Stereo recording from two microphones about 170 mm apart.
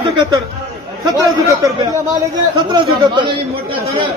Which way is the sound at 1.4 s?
20° right (ahead or behind).